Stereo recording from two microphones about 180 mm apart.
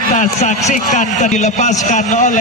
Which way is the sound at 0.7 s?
45° left (ahead or behind).